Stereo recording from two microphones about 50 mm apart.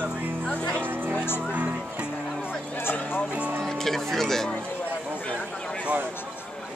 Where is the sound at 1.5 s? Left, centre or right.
Right.